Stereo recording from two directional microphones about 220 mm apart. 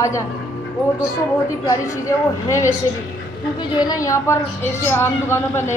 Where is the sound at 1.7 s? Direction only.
15° left (ahead or behind).